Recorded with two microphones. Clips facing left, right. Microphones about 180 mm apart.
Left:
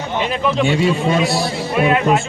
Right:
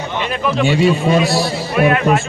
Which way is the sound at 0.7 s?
Centre (ahead or behind).